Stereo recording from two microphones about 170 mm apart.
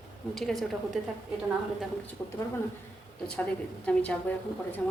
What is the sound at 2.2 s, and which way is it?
Speech, 20° left (ahead or behind).